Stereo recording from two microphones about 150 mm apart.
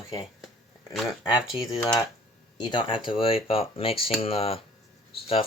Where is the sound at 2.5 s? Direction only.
30° left (ahead or behind).